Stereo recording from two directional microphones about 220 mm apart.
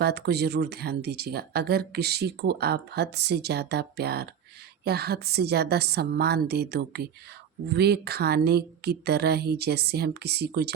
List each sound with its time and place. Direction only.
0.0 s speech: 45° right (ahead or behind)